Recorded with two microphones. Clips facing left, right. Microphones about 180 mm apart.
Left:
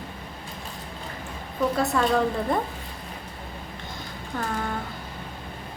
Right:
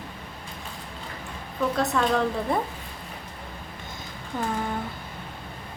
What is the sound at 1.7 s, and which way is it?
Speech, centre (ahead or behind).